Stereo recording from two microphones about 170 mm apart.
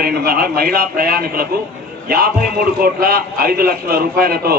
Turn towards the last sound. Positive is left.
turn(degrees=-60)  # may be behind; listen again after turning